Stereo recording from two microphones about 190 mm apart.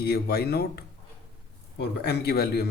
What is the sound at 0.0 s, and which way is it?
Speech, 55° left (ahead or behind).